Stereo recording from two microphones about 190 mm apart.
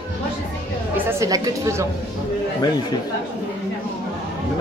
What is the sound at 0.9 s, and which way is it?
Speech, 20° right (ahead or behind).